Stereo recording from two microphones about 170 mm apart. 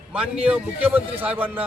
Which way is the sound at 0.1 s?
5° right (ahead or behind).